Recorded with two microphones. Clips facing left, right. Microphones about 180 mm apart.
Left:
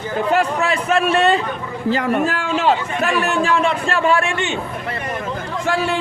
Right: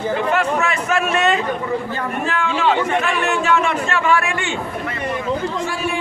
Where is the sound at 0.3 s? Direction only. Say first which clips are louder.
Left 1 dB; 35° left (ahead or behind).